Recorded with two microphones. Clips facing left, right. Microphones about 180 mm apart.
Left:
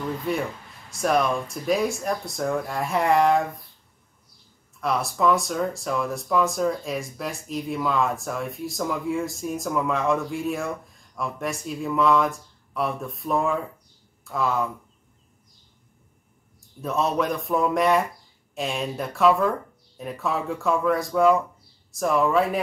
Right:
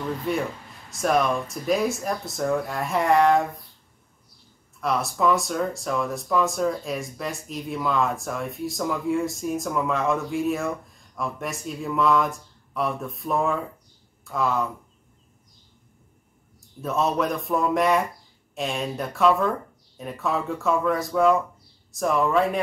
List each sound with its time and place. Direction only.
0.3 s speech: centre (ahead or behind)
4.7 s speech: centre (ahead or behind)
16.8 s speech: centre (ahead or behind)